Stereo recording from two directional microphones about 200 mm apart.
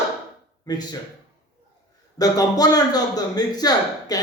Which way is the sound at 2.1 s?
20° left (ahead or behind).